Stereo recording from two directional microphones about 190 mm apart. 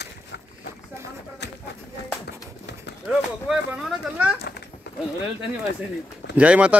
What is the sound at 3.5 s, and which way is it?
Speech, 5° right (ahead or behind).